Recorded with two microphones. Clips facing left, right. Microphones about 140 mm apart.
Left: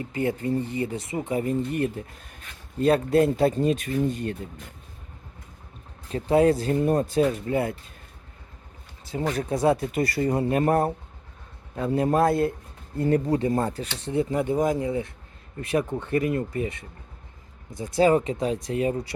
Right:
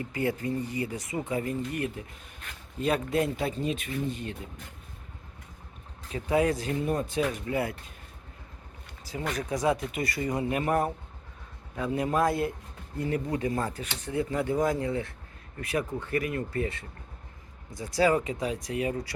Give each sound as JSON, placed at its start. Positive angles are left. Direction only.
{"t": 0.0, "sound": "speech", "side_deg": 25}
{"t": 6.1, "sound": "speech", "side_deg": 35}
{"t": 9.0, "sound": "speech", "side_deg": 30}
{"t": 13.0, "sound": "speech", "side_deg": 40}